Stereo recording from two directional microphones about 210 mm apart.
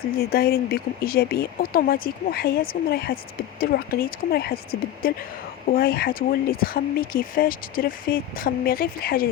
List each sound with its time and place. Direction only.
0.2 s speech: 45° left (ahead or behind)